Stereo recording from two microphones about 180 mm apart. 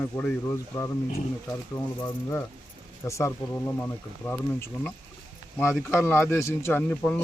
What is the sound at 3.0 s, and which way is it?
A man's voice, 15° left (ahead or behind).